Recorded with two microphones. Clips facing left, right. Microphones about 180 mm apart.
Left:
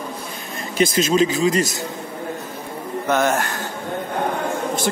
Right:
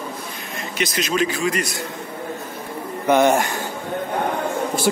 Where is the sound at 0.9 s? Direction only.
25° left (ahead or behind).